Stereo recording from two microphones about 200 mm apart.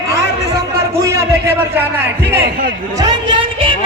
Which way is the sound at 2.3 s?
50° right (ahead or behind).